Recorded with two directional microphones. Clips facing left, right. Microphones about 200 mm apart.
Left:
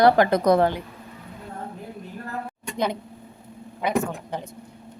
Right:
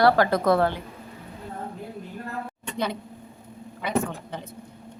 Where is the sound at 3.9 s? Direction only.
15° left (ahead or behind).